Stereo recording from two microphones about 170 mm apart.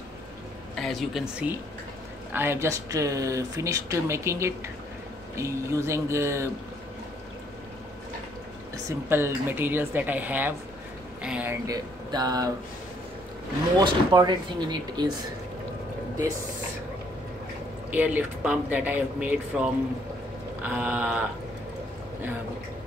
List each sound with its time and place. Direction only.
0.7 s speech: centre (ahead or behind); by 6.5 s 15° right (ahead or behind)
8.7 s speech: 15° right (ahead or behind)
11.6 s speech: 20° right (ahead or behind)
13.7 s speech: 25° right (ahead or behind)
17.9 s speech: 10° right (ahead or behind)